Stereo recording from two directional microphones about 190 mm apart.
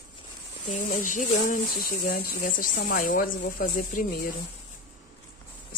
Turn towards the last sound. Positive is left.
turn(degrees=45)  # may be behind; listen again after turning